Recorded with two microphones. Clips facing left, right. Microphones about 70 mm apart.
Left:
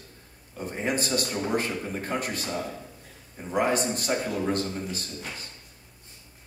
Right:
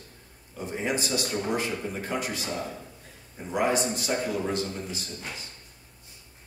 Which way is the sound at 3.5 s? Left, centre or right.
Left.